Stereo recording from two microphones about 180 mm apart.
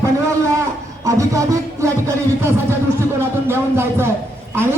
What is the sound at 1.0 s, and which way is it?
Speech, 15° right (ahead or behind).